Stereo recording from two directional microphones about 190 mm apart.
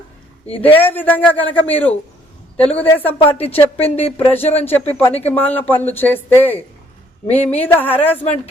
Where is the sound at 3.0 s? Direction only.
30° left (ahead or behind).